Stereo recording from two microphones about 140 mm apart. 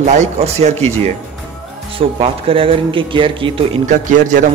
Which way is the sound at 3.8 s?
65° right (ahead or behind).